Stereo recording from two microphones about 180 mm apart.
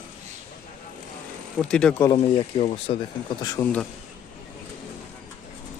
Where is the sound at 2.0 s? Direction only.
25° left (ahead or behind).